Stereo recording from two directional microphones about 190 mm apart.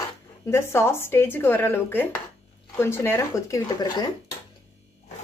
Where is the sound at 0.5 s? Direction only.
15° left (ahead or behind).